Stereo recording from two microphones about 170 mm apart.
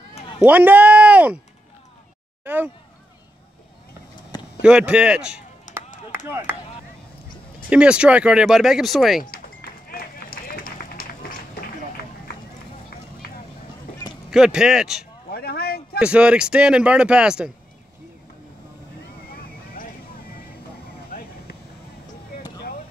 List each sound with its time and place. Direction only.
0.4 s speech: 10° right (ahead or behind)
2.4 s speech: 10° right (ahead or behind)
4.6 s speech: 5° right (ahead or behind)
7.7 s speech: 5° right (ahead or behind)
9.8 s run: 60° left (ahead or behind)
14.3 s speech: 5° right (ahead or behind)
15.3 s a sound: 65° left (ahead or behind)
16.0 s speech: 5° right (ahead or behind)
19.3 s vehicle: 60° left (ahead or behind)
21.1 s a sound: 65° left (ahead or behind)